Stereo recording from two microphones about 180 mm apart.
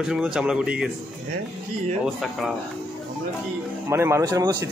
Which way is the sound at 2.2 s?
Centre (ahead or behind).